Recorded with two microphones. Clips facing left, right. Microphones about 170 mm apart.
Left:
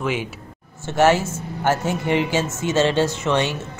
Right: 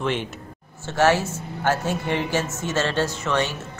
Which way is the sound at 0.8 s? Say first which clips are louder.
Left 3 dB; 15° left (ahead or behind).